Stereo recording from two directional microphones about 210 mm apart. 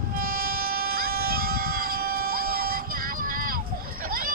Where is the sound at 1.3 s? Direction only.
45° right (ahead or behind).